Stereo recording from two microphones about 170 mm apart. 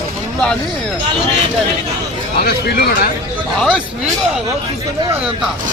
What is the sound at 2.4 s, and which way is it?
Speech, 65° left (ahead or behind).